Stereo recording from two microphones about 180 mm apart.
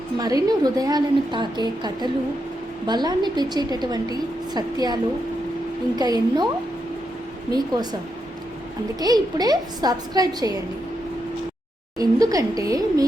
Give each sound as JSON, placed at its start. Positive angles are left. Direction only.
{"t": 0.2, "sound": "a woman's voice", "side_deg": -20}
{"t": 6.0, "sound": "a woman's voice", "side_deg": -20}
{"t": 9.0, "sound": "a woman's voice", "side_deg": -20}
{"t": 11.9, "sound": "a woman's voice", "side_deg": -20}